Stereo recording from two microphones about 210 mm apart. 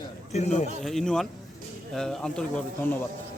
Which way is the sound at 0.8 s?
Centre (ahead or behind).